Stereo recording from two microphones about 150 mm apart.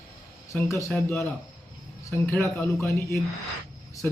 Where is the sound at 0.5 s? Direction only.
15° left (ahead or behind).